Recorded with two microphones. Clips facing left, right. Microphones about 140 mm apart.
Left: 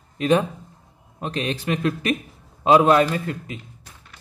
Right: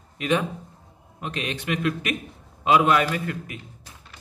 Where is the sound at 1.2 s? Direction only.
35° left (ahead or behind).